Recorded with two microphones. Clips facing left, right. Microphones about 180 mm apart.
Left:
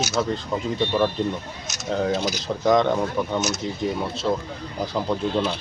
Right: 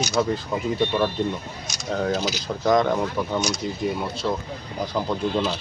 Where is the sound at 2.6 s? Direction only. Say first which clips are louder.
Left 1 dB; centre (ahead or behind).